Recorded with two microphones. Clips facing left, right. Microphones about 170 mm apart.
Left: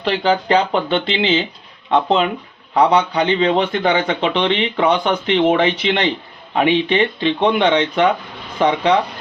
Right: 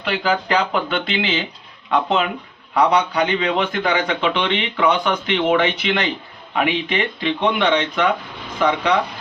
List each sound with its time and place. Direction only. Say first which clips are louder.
0.0 s a man's voice: left 4 dB; 30° left (ahead or behind)